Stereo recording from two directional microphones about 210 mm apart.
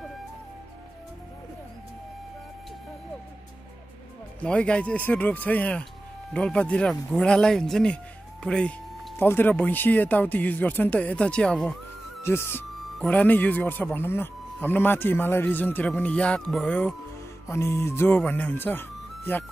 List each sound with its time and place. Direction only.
4.4 s speech: 5° left (ahead or behind)